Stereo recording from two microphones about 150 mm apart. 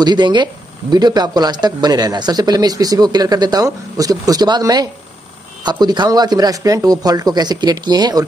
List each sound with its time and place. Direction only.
0.0 s speech: 30° right (ahead or behind)